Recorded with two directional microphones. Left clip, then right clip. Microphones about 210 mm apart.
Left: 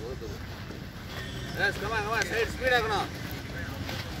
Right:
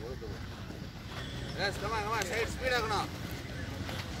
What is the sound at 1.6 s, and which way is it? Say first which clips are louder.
Speech: left 5 dB; 40° left (ahead or behind).